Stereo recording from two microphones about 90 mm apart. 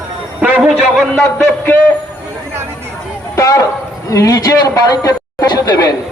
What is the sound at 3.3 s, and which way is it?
A man's voice, 35° left (ahead or behind).